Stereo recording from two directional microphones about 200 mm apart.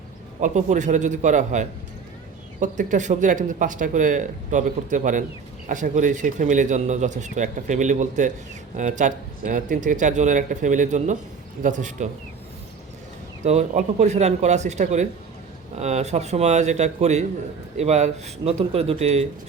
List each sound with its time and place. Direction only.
0.3 s speech: 35° right (ahead or behind)
13.4 s speech: 35° right (ahead or behind)